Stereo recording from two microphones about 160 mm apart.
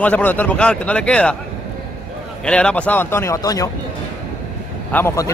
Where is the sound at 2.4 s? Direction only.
5° left (ahead or behind).